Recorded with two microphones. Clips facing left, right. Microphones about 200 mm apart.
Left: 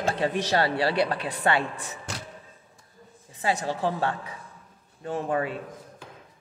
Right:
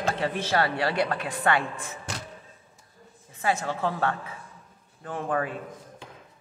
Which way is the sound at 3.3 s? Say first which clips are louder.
Even; 20° left (ahead or behind).